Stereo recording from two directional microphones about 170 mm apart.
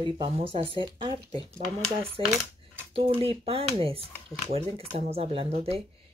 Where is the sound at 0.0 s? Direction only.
30° right (ahead or behind).